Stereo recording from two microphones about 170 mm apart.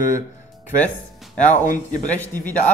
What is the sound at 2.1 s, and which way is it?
Speech, 10° left (ahead or behind).